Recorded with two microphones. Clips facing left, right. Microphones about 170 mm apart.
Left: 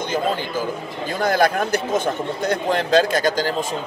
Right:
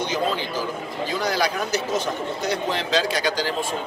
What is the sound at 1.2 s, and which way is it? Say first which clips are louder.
A man's voice: left 7 dB; 50° left (ahead or behind).